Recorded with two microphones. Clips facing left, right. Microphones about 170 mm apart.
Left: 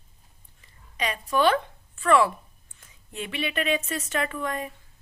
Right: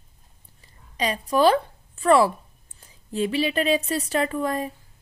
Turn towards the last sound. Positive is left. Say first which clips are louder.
# right 5 dB
turn(degrees=-35)  # may be behind; listen again after turning